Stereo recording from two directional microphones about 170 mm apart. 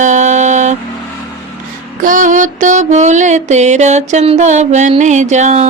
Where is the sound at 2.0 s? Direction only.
50° right (ahead or behind).